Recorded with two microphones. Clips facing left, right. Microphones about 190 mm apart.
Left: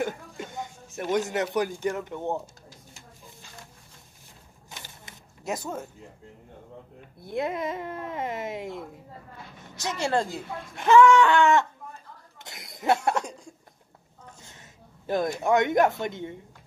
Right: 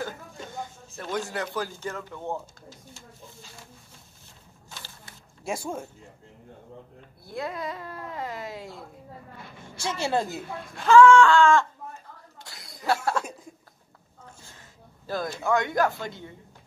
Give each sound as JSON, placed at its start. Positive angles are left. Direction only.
{"t": 0.6, "sound": "speech", "side_deg": 20}
{"t": 4.6, "sound": "a sound", "side_deg": 20}
{"t": 5.4, "sound": "speech", "side_deg": -10}
{"t": 7.2, "sound": "speech", "side_deg": 20}
{"t": 9.9, "sound": "a woman's voice", "side_deg": -10}
{"t": 10.8, "sound": "speech", "side_deg": 20}
{"t": 12.4, "sound": "cough", "side_deg": 20}
{"t": 14.4, "sound": "a sound", "side_deg": 20}
{"t": 15.3, "sound": "speech", "side_deg": 20}